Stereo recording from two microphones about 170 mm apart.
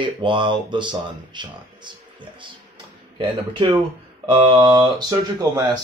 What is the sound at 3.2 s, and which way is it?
Speech, 30° right (ahead or behind).